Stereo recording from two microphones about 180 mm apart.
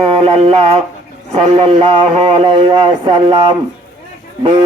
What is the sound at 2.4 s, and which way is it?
Speech, 25° right (ahead or behind).